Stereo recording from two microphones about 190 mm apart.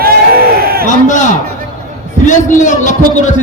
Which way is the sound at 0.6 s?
55° right (ahead or behind).